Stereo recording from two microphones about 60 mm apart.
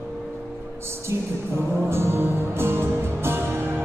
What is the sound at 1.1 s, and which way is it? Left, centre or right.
Music, right.